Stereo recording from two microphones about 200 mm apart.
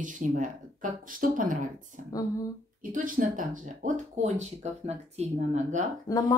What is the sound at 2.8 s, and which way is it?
Speech, 45° right (ahead or behind).